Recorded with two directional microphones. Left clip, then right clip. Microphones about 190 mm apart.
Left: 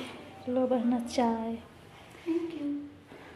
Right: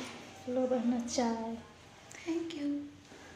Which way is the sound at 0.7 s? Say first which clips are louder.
Left 4 dB; 20° left (ahead or behind).